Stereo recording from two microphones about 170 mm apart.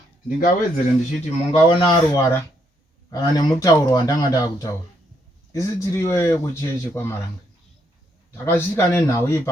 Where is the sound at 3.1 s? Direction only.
20° left (ahead or behind).